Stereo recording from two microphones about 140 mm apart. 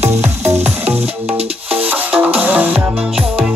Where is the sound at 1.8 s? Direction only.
10° right (ahead or behind).